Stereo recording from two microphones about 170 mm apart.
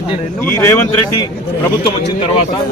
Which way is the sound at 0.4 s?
15° left (ahead or behind).